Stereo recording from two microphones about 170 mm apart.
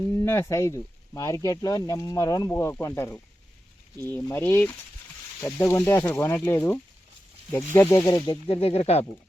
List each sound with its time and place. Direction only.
0.1 s speech: 15° left (ahead or behind)
8.4 s speech: 35° left (ahead or behind)